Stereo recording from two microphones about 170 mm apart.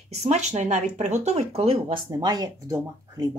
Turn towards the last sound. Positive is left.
turn(degrees=-20)  # may be behind; listen again after turning